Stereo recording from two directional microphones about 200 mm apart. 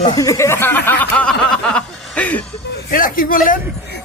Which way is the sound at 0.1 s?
15° left (ahead or behind).